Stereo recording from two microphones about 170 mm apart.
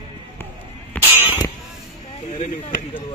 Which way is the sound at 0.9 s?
10° left (ahead or behind).